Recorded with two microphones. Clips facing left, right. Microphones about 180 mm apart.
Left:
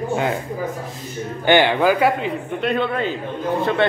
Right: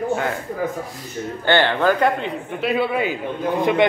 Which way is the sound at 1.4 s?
15° left (ahead or behind).